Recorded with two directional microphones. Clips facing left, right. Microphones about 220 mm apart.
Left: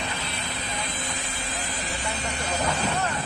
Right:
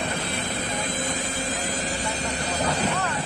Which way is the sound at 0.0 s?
50° right (ahead or behind).